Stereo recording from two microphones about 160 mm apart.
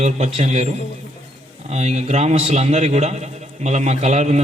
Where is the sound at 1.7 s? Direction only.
45° right (ahead or behind).